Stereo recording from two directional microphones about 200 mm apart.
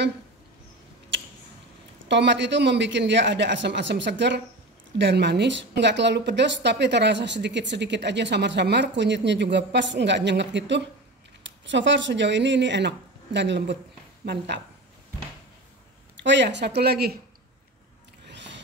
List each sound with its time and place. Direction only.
2.0 s a woman's voice: 60° right (ahead or behind)
16.2 s a woman's voice: 60° right (ahead or behind)
18.2 s music: 60° right (ahead or behind)